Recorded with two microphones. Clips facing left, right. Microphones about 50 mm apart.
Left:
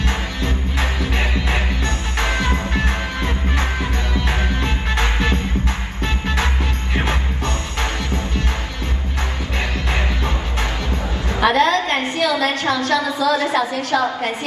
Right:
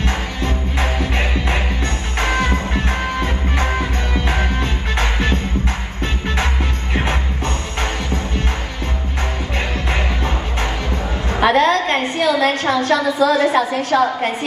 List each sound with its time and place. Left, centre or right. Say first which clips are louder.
0.7 s music: right 2 dB; right
11.3 s a sound: right 1 dB; right
13.6 s a woman's voice: right 3 dB; right